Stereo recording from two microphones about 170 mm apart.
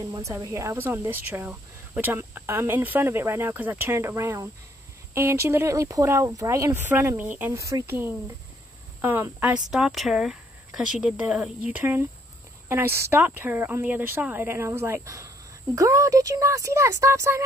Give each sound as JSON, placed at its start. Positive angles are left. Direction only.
{"t": 0.0, "sound": "speech", "side_deg": -20}